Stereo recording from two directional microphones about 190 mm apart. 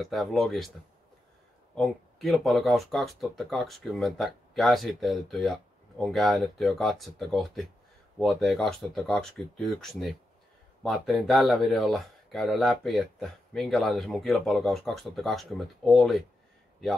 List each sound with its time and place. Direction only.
0.0 s speech: centre (ahead or behind)
1.8 s speech: centre (ahead or behind)